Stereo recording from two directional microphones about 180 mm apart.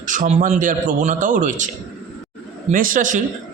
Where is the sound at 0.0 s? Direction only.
45° right (ahead or behind).